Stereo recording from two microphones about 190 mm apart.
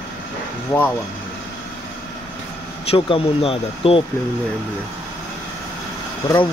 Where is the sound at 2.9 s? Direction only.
30° left (ahead or behind).